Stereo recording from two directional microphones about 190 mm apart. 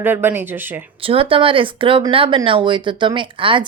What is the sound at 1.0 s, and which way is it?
Speech, 30° right (ahead or behind).